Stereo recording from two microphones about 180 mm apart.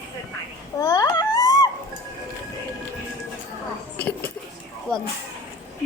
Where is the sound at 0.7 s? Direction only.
20° left (ahead or behind).